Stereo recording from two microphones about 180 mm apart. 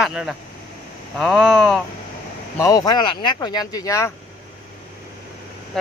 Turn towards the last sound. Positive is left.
turn(degrees=0)  # may be behind; listen again after turning